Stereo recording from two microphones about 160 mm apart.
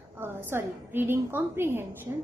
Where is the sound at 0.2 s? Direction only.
15° right (ahead or behind).